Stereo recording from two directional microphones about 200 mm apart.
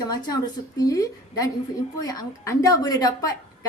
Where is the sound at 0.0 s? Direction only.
20° left (ahead or behind).